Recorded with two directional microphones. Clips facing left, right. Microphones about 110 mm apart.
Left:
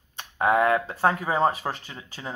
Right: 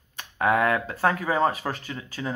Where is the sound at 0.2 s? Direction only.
20° left (ahead or behind).